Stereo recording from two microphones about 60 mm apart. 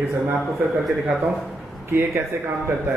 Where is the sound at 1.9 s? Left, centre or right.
Right.